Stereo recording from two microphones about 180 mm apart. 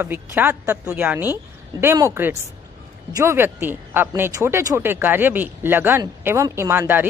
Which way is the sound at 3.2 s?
15° right (ahead or behind).